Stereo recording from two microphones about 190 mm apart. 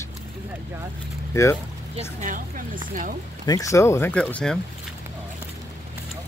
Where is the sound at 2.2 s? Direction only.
45° right (ahead or behind).